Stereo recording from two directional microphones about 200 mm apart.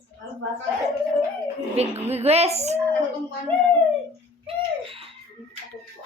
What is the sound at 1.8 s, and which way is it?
Speech, 30° right (ahead or behind).